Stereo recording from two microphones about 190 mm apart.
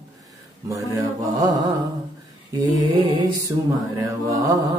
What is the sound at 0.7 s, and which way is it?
Mantra, 15° right (ahead or behind).